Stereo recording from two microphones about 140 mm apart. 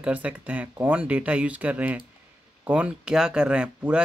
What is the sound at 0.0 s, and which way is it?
Speech, 10° right (ahead or behind).